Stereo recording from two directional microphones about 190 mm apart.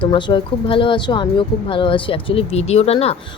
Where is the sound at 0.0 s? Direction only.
25° left (ahead or behind).